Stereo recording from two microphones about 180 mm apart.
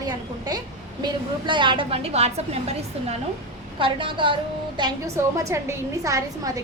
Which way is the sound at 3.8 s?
30° right (ahead or behind).